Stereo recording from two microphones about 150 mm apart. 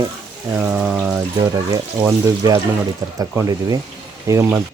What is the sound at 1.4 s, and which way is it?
Speech, 25° right (ahead or behind).